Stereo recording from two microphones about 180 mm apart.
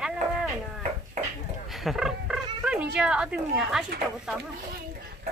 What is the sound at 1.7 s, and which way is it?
Speech, centre (ahead or behind).